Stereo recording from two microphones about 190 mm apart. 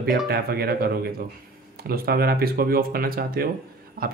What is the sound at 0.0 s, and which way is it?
Speech, 55° right (ahead or behind).